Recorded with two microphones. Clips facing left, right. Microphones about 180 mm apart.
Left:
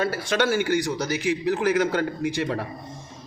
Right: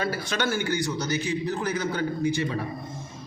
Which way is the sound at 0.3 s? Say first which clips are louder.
Left 7 dB; 85° left.